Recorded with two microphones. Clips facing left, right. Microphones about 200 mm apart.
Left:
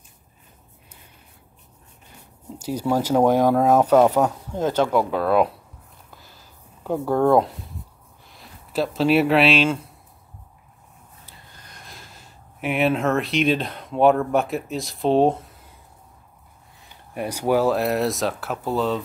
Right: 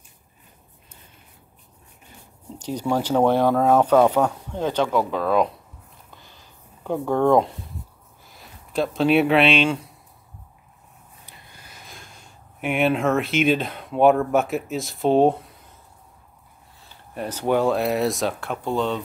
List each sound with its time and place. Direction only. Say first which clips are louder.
2.6 s speech: left 1 dB; 10° left (ahead or behind)
6.0 s a sound: even; 5° left (ahead or behind)
8.3 s speech: even; centre (ahead or behind)
11.2 s speech: right 1 dB; 10° right (ahead or behind)
16.8 s speech: left 2 dB; 15° left (ahead or behind)